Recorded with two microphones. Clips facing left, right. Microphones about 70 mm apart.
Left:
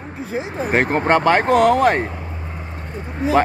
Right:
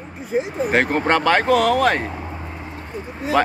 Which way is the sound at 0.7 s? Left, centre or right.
Left.